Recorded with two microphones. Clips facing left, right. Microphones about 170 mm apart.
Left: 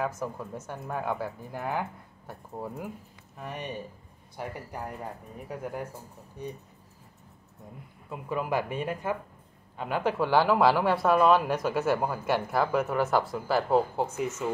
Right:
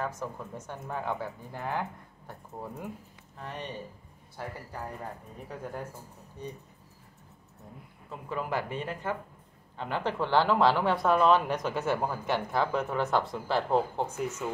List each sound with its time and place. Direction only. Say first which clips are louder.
0.2 s speech: left 3 dB; 10° left (ahead or behind)
8.1 s speech: left 3 dB; 15° left (ahead or behind)